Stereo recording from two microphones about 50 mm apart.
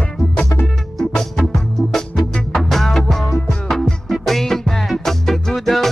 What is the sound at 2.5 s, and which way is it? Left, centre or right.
Music, centre.